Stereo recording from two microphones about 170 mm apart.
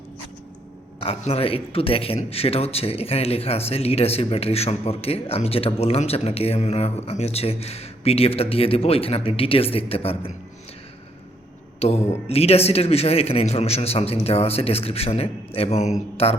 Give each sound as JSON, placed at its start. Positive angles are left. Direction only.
{"t": 0.9, "sound": "a man's voice", "side_deg": 35}
{"t": 11.8, "sound": "a man's voice", "side_deg": 40}